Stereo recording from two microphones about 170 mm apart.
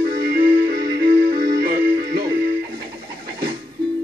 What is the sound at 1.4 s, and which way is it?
Music, 60° right (ahead or behind).